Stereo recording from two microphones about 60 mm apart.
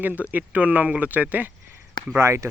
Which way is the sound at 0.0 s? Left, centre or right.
Right.